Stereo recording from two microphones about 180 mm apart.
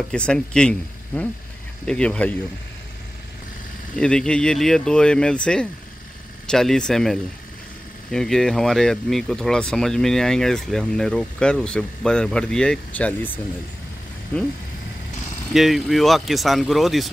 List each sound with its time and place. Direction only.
0.1 s speech: 5° left (ahead or behind)
4.0 s speech: 5° left (ahead or behind)
14.3 s speech: 10° left (ahead or behind)
15.5 s speech: centre (ahead or behind)